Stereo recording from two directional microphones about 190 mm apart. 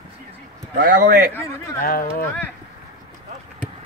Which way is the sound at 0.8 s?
50° right (ahead or behind).